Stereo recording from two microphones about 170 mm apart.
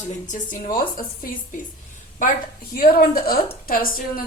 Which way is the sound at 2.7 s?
60° left (ahead or behind).